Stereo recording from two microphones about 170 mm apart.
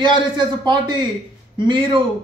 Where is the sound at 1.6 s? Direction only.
30° right (ahead or behind).